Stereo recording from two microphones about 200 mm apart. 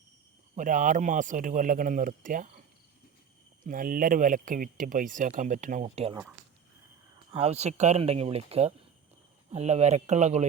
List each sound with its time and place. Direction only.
0.5 s speech: 40° right (ahead or behind)
3.6 s speech: 45° right (ahead or behind)
7.3 s speech: 30° right (ahead or behind)